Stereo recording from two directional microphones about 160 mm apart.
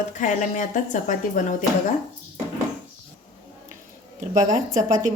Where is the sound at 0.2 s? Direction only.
50° left (ahead or behind).